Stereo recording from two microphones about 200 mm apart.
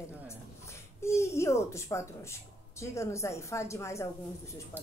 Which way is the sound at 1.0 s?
15° left (ahead or behind).